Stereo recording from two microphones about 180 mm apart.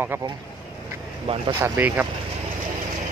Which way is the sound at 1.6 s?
10° right (ahead or behind).